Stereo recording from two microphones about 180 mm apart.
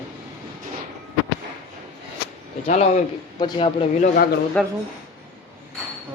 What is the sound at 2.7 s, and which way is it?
Speech, 40° left (ahead or behind).